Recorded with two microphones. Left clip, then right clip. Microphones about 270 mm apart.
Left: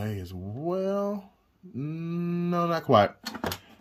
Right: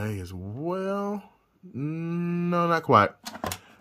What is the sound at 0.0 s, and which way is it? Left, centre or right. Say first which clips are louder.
Speech: right 2 dB; centre.